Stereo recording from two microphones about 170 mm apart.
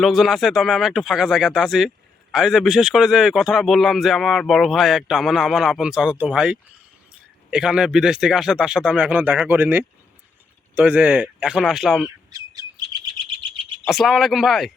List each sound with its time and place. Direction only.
0.0 s speech: centre (ahead or behind)
12.0 s chirp: 20° right (ahead or behind)
13.8 s speech: centre (ahead or behind)